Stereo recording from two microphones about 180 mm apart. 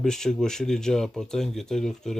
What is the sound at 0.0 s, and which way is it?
Speech, 5° left (ahead or behind).